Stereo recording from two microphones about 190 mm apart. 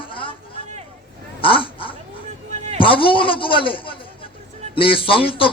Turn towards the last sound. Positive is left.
turn(degrees=30)  # may be behind; listen again after turning